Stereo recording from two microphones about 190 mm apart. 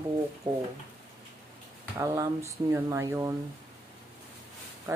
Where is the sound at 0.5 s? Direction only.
15° right (ahead or behind).